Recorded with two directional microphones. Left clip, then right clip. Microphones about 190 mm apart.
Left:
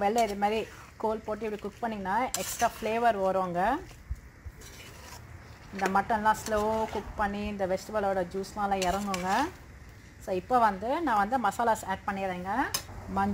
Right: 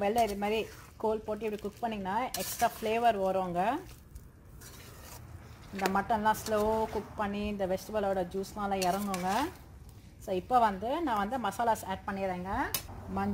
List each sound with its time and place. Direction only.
0.0 s speech: 30° left (ahead or behind)
5.8 s a woman's voice: 25° left (ahead or behind)